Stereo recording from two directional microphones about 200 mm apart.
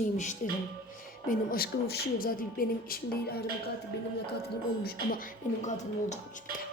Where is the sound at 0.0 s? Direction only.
35° left (ahead or behind).